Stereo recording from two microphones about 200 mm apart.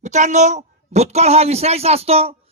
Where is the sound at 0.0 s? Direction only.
35° right (ahead or behind).